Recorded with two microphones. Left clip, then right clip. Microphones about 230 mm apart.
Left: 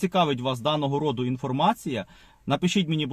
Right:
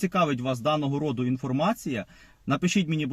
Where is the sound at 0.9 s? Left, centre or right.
Left.